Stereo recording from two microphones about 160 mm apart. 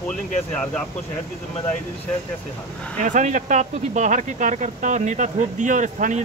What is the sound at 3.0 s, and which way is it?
Speech, 50° right (ahead or behind).